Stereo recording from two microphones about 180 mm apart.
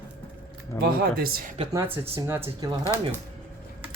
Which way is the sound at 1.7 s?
10° right (ahead or behind).